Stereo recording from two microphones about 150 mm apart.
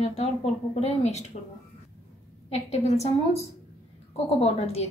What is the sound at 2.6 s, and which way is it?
A woman's voice, 45° left (ahead or behind).